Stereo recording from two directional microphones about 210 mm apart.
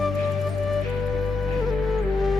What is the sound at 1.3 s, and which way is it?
Music, centre (ahead or behind).